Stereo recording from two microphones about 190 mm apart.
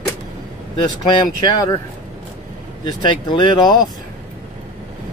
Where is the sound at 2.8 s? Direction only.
25° left (ahead or behind).